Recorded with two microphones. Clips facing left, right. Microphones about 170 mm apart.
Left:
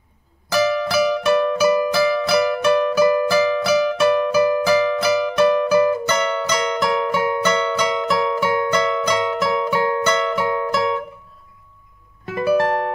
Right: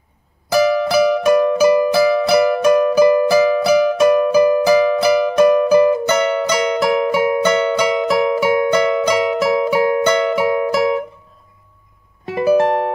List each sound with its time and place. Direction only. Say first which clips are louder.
0.5 s music: right 4 dB; 15° right (ahead or behind)
12.5 s music: right 3 dB; 20° right (ahead or behind)